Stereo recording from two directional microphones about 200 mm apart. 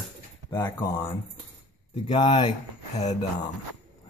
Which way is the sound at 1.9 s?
25° left (ahead or behind).